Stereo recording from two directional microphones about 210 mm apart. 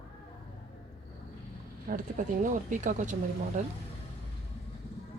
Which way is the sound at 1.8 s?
40° right (ahead or behind).